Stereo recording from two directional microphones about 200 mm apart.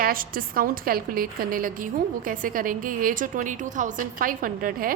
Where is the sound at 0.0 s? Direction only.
45° right (ahead or behind).